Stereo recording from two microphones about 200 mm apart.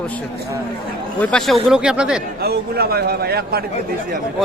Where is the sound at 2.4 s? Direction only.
50° right (ahead or behind).